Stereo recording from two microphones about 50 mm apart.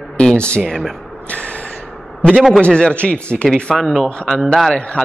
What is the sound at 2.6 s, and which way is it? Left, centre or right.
Speech, centre.